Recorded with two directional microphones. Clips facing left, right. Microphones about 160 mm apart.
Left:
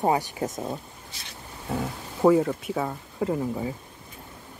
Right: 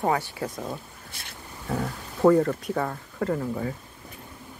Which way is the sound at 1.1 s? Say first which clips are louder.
Right 2 dB; 55° right (ahead or behind).